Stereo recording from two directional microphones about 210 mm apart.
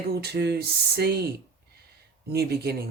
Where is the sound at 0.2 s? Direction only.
50° right (ahead or behind).